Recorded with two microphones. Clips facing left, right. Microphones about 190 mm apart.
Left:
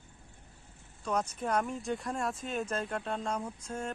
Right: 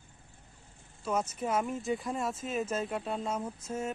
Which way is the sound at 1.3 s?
5° right (ahead or behind).